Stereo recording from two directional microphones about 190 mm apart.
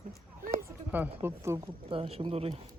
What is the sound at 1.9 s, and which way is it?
Speech, 30° right (ahead or behind).